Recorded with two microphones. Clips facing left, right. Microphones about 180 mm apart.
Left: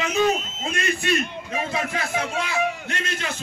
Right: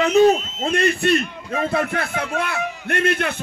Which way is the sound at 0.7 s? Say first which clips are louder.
Right 6 dB; 60° right (ahead or behind).